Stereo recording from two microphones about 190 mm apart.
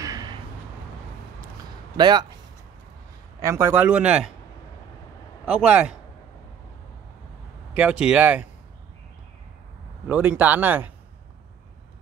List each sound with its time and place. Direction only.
0.0 s a sound: 20° right (ahead or behind)
2.0 s speech: 20° right (ahead or behind)
3.3 s a man's voice: 15° right (ahead or behind)
5.4 s a man's voice: 5° right (ahead or behind)
7.7 s a man's voice: 5° right (ahead or behind)
10.0 s a man's voice: 10° right (ahead or behind)